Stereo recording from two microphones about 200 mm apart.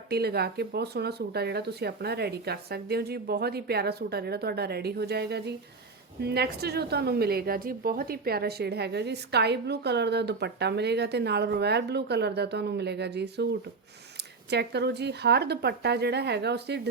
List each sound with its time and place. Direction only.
0.1 s a woman's voice: 55° right (ahead or behind)
14.5 s a woman's voice: 55° right (ahead or behind)